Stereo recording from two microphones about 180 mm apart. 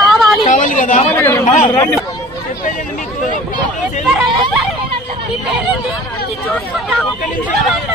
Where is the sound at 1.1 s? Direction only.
15° left (ahead or behind).